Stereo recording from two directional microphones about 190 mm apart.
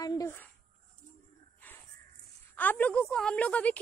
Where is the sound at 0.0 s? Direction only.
20° left (ahead or behind).